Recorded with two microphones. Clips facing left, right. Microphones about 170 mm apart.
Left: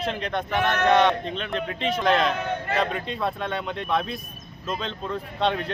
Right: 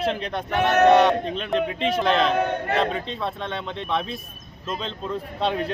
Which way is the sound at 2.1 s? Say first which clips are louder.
Even; centre (ahead or behind).